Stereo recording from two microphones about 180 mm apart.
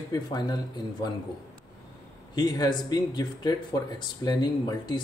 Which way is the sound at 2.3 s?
20° left (ahead or behind).